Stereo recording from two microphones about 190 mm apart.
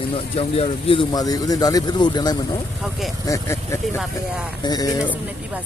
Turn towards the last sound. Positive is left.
turn(degrees=20)  # may be behind; listen again after turning